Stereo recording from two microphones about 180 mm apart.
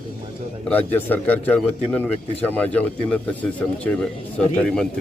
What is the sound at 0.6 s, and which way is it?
A man's voice, 10° left (ahead or behind).